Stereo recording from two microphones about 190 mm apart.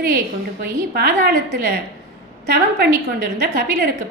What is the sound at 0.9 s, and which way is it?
Speech, 55° right (ahead or behind).